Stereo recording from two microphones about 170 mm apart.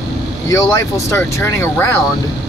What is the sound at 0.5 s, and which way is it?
Speech, 20° left (ahead or behind).